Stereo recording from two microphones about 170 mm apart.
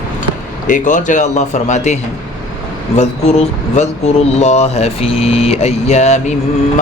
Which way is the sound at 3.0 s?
40° left (ahead or behind).